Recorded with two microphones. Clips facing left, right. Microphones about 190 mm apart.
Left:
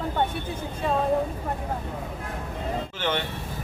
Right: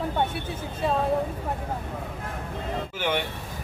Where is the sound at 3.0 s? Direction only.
10° right (ahead or behind).